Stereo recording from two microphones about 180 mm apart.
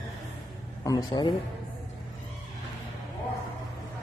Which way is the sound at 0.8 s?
25° left (ahead or behind).